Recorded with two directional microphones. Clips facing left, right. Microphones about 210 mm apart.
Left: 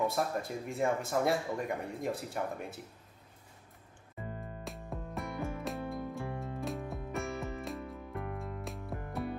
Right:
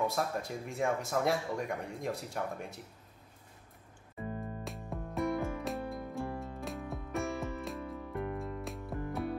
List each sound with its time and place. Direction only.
0.0 s speech: centre (ahead or behind)
4.6 s music: centre (ahead or behind)